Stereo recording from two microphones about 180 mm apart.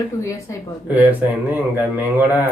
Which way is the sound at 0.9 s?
10° right (ahead or behind).